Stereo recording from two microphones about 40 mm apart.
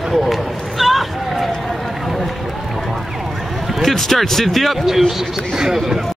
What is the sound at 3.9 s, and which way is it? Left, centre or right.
Speech, centre.